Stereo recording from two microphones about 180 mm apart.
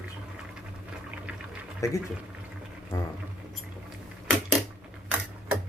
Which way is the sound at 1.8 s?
15° left (ahead or behind).